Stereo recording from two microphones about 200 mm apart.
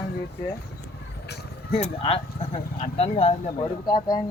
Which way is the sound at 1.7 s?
30° left (ahead or behind).